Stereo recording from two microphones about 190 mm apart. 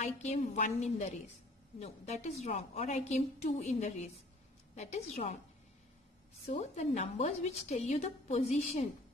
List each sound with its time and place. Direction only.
0.0 s a woman's voice: 35° left (ahead or behind)
6.5 s a woman's voice: 35° left (ahead or behind)